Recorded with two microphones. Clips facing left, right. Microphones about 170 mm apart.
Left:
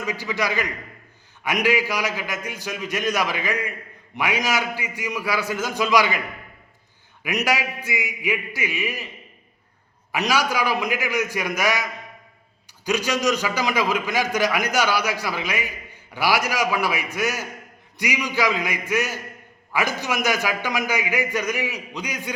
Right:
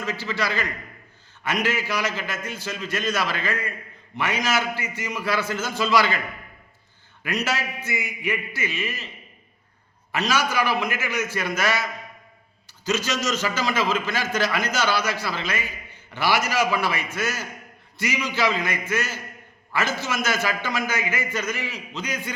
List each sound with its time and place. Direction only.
0.0 s a man's voice: 15° left (ahead or behind)
10.1 s a man's voice: 15° left (ahead or behind)